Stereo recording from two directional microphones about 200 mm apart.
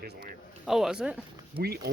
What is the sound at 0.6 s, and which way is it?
Speech, centre (ahead or behind).